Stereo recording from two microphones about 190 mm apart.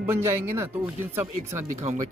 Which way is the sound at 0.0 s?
10° right (ahead or behind).